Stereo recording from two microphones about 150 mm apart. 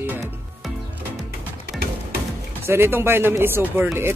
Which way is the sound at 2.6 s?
15° right (ahead or behind).